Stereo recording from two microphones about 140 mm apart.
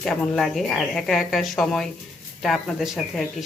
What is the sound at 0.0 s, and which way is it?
Speech, centre (ahead or behind).